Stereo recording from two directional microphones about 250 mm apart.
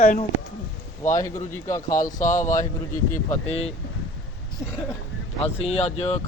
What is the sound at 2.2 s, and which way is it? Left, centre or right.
Speech, left.